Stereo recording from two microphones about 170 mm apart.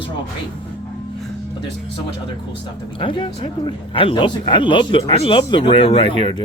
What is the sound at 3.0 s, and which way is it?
Speech, 30° left (ahead or behind).